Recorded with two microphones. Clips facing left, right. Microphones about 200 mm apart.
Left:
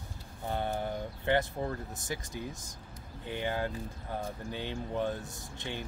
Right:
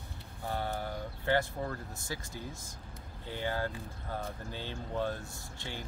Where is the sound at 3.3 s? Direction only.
20° left (ahead or behind).